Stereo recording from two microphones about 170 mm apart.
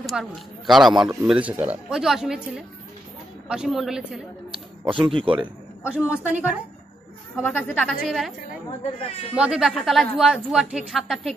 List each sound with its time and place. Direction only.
0.0 s a woman's voice: centre (ahead or behind)
4.5 s speech: 30° right (ahead or behind)
5.9 s a woman's voice: 5° right (ahead or behind)
7.4 s a woman's voice: 10° left (ahead or behind)
9.3 s a woman's voice: 5° right (ahead or behind)